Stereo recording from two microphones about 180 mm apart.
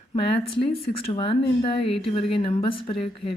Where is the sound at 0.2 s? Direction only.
30° left (ahead or behind).